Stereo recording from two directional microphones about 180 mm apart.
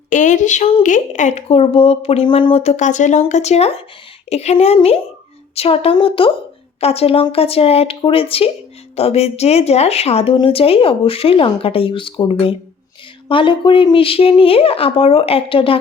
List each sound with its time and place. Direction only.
0.1 s speech: 45° left (ahead or behind)